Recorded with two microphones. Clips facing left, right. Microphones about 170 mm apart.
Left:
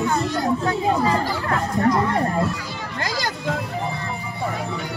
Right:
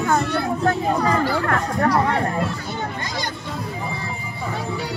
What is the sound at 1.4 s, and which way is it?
Chatter, 55° right (ahead or behind).